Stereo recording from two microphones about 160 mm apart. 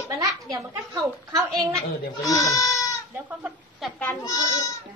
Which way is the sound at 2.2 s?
20° left (ahead or behind).